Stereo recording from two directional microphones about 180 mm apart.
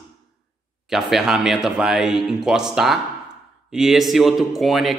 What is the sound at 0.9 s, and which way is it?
A man's voice, centre (ahead or behind).